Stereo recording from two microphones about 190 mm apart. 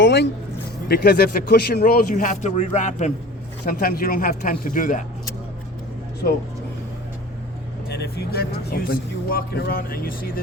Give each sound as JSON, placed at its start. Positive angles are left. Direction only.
{"t": 0.0, "sound": "speech", "side_deg": 65}
{"t": 3.6, "sound": "speech", "side_deg": 50}
{"t": 7.9, "sound": "speech", "side_deg": 60}